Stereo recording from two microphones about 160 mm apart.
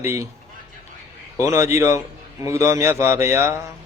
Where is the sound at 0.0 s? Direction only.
15° right (ahead or behind).